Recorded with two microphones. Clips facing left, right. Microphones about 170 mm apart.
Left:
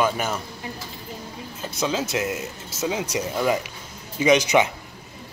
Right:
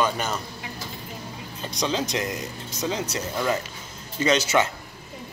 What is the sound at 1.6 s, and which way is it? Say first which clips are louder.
Speech: left 1 dB; 5° left (ahead or behind).